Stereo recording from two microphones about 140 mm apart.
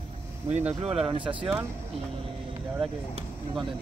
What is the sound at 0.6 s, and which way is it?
Speech, 5° right (ahead or behind).